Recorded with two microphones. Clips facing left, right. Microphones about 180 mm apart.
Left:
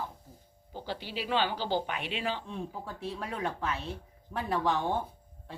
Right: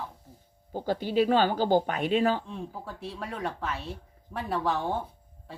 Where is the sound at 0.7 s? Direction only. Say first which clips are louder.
Right 10 dB; 45° right (ahead or behind).